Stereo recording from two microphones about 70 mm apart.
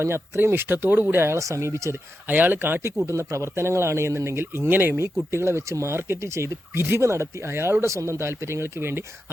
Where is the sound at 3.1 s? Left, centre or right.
Right.